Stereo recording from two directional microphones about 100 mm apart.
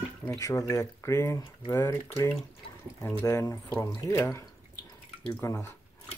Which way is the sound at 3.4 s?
35° left (ahead or behind).